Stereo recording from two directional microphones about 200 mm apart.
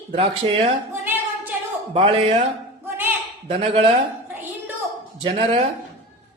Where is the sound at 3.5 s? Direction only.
30° right (ahead or behind).